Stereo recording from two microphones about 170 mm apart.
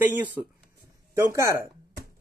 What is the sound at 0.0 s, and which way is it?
Speech, 10° right (ahead or behind).